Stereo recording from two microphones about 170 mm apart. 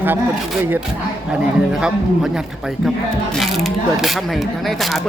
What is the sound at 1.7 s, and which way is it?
Speech, 5° right (ahead or behind).